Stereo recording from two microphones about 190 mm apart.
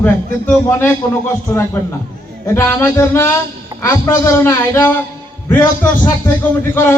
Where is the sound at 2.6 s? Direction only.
15° left (ahead or behind).